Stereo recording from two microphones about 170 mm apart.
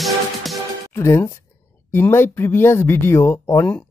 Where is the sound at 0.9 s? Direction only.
15° left (ahead or behind).